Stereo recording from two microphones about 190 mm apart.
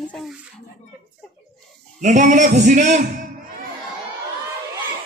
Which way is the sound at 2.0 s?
40° right (ahead or behind).